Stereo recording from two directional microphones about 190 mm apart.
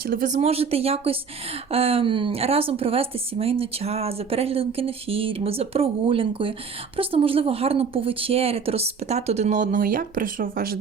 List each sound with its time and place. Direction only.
0.1 s speech: 40° right (ahead or behind)